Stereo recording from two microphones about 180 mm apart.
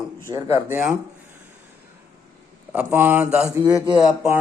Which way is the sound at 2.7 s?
10° right (ahead or behind).